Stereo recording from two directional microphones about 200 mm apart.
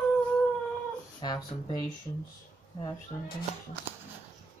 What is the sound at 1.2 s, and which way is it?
Speech, 20° left (ahead or behind).